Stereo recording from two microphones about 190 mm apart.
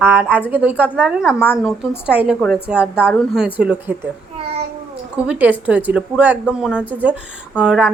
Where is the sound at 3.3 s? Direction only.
5° right (ahead or behind).